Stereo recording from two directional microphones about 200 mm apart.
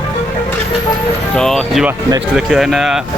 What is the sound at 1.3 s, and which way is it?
Speech, centre (ahead or behind).